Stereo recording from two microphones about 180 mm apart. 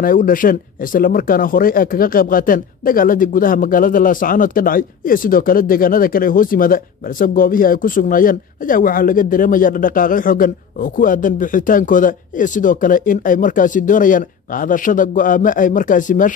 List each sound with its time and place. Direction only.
0.0 s speech: 50° left (ahead or behind)